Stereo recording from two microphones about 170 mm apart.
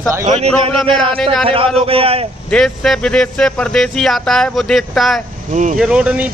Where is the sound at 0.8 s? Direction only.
30° right (ahead or behind).